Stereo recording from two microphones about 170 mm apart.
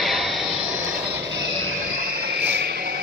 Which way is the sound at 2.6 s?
70° right (ahead or behind).